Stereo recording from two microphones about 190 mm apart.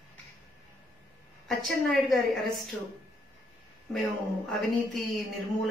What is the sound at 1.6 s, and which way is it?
A woman's voice, centre (ahead or behind).